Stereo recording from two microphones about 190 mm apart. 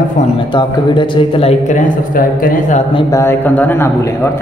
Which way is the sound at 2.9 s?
20° left (ahead or behind).